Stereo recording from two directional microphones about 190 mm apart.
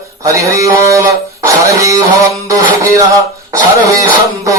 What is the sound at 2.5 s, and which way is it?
Music, 15° right (ahead or behind).